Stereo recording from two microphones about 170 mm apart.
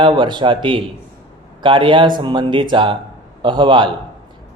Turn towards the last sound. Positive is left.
turn(degrees=-30)  # may be behind; listen again after turning